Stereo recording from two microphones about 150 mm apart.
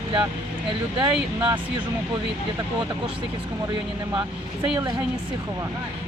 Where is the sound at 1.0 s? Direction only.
30° right (ahead or behind).